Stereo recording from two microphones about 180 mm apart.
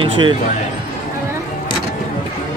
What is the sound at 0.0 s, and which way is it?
Speech, 30° right (ahead or behind).